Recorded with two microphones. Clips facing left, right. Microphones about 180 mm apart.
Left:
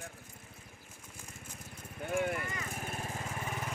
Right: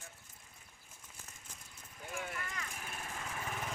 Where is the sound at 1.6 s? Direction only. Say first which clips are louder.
Left 9 dB; 60° left (ahead or behind).